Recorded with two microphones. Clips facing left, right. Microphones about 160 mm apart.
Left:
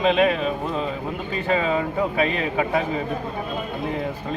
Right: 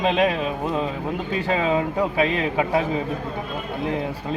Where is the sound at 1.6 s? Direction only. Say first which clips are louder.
Right 1 dB; 20° right (ahead or behind).